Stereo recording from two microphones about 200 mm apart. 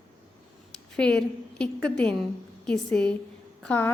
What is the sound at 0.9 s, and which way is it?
A woman's voice, 5° left (ahead or behind).